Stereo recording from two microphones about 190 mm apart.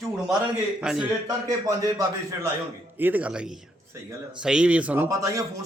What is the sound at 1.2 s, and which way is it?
A man's voice, 15° right (ahead or behind).